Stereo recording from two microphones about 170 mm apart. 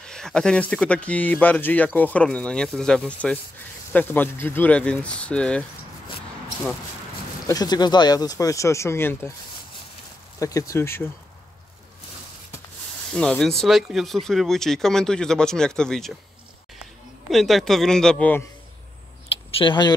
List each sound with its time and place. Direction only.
0.0 s speech: 5° left (ahead or behind)
7.4 s speech: 25° left (ahead or behind)
10.4 s speech: 20° left (ahead or behind)
13.1 s speech: 5° left (ahead or behind)
17.3 s speech: centre (ahead or behind)
19.6 s speech: 25° left (ahead or behind)